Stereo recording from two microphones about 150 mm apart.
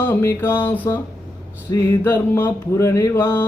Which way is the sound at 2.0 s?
15° left (ahead or behind).